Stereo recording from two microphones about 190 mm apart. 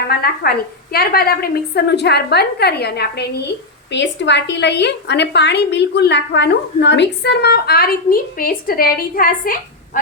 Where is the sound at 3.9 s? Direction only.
70° left (ahead or behind); by 10.0 s 45° left (ahead or behind).